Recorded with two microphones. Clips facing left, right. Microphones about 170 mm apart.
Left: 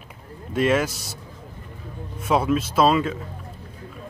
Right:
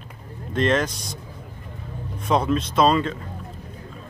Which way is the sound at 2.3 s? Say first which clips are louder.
Even; 5° left (ahead or behind).